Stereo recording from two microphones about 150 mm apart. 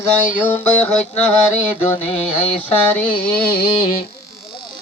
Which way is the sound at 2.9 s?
10° left (ahead or behind).